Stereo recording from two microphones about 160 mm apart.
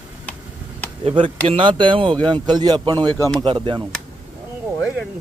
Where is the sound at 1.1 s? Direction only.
35° right (ahead or behind).